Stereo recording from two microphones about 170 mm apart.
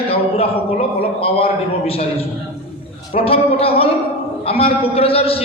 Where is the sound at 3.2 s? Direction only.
35° left (ahead or behind).